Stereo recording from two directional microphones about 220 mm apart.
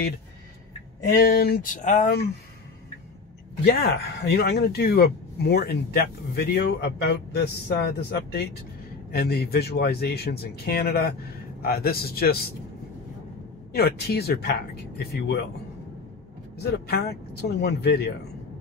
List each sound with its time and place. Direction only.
1.0 s a man's voice: 45° left (ahead or behind)
3.6 s a man's voice: 45° left (ahead or behind)
13.7 s a man's voice: 45° left (ahead or behind)
16.5 s a man's voice: 45° left (ahead or behind)